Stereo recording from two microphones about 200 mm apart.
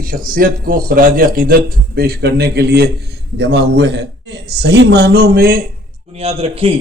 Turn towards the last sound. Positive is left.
turn(degrees=-30)  # may be behind; listen again after turning